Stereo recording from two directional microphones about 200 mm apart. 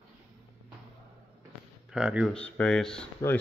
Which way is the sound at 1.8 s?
5° right (ahead or behind).